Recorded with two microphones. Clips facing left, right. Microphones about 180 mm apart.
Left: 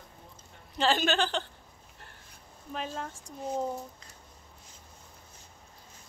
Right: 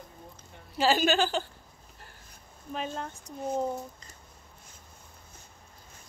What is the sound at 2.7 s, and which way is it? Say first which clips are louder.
A woman's voice: right 2 dB; centre (ahead or behind).